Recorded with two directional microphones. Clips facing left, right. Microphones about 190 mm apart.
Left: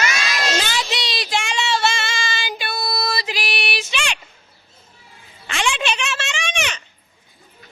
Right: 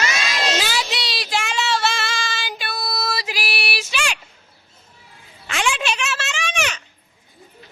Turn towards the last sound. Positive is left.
turn(degrees=-5)  # may be behind; listen again after turning